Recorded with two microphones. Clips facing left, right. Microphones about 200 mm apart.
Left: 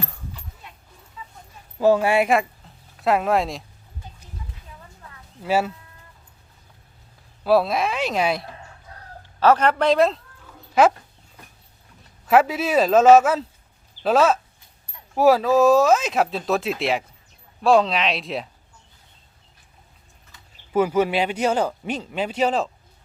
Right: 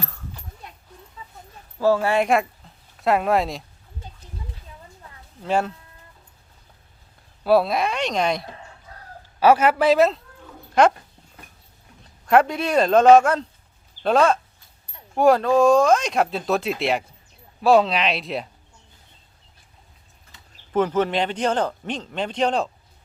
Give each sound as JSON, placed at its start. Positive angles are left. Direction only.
{"t": 1.2, "sound": "a sound", "side_deg": -35}
{"t": 1.8, "sound": "a man's voice", "side_deg": 15}
{"t": 5.4, "sound": "a man's voice", "side_deg": 5}
{"t": 7.4, "sound": "speech", "side_deg": 0}
{"t": 9.4, "sound": "speech", "side_deg": -10}
{"t": 12.2, "sound": "speech", "side_deg": 5}
{"t": 20.7, "sound": "a man's voice", "side_deg": 10}